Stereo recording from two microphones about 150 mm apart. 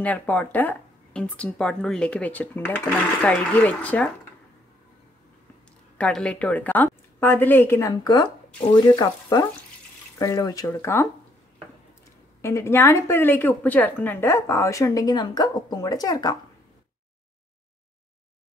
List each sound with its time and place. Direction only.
0.0 s speech: 10° left (ahead or behind)
5.9 s a woman's voice: 5° left (ahead or behind)
12.4 s a woman's voice: 20° left (ahead or behind)